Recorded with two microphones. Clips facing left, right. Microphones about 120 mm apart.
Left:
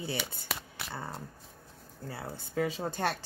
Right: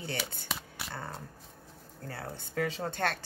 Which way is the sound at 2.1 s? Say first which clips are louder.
Left 1 dB; 5° left (ahead or behind).